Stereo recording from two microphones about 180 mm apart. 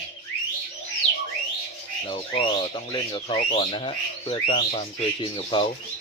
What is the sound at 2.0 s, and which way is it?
Speech, 30° left (ahead or behind).